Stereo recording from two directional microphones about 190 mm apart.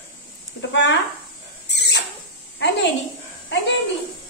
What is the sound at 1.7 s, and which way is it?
Rodents, 65° left (ahead or behind).